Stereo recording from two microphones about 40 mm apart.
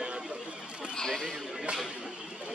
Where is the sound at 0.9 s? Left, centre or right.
Centre.